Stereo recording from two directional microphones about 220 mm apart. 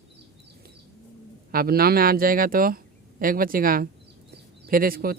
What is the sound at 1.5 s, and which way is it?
Speech, 45° right (ahead or behind).